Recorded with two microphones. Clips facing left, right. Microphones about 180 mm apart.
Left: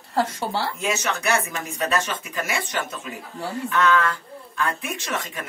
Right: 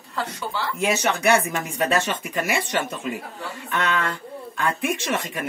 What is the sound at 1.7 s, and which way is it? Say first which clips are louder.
Speech: right 2 dB; 55° right (ahead or behind).